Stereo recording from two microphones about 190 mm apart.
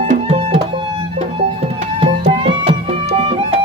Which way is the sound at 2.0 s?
30° right (ahead or behind).